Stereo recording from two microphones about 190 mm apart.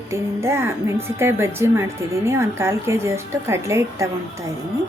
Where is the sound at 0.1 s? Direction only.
15° right (ahead or behind).